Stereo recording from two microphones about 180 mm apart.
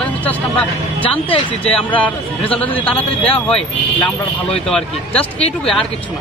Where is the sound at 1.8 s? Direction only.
10° left (ahead or behind).